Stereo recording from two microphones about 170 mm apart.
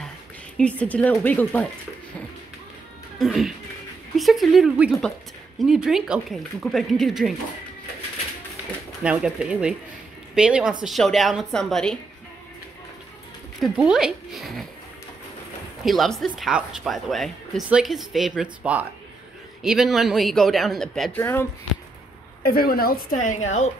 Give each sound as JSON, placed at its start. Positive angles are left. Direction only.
{"t": 0.6, "sound": "a woman's voice", "side_deg": 10}
{"t": 3.2, "sound": "speech", "side_deg": 0}
{"t": 9.0, "sound": "speech", "side_deg": -5}
{"t": 13.6, "sound": "speech", "side_deg": -5}
{"t": 15.8, "sound": "speech", "side_deg": 0}
{"t": 21.2, "sound": "a woman's voice", "side_deg": 15}
{"t": 22.4, "sound": "a woman's voice", "side_deg": 60}
{"t": 23.4, "sound": "a woman's voice", "side_deg": 40}